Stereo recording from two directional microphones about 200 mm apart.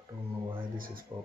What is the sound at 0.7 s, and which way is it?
Speech, 45° right (ahead or behind).